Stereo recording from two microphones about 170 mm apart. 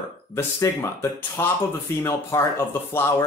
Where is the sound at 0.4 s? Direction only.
20° left (ahead or behind).